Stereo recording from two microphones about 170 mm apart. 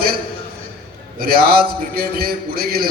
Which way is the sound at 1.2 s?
60° right (ahead or behind).